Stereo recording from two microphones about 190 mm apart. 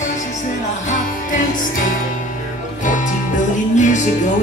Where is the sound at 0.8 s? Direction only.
40° left (ahead or behind).